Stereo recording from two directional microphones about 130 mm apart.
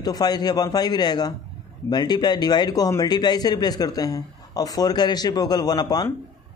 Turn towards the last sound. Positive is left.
turn(degrees=30)  # may be behind; listen again after turning